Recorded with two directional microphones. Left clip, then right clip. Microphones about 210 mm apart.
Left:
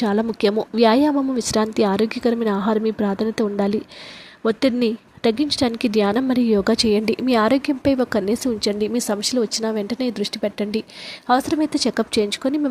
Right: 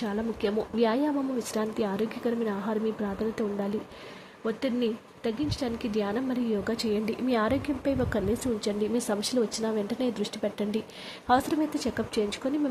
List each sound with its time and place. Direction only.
0.0 s speech: 30° left (ahead or behind)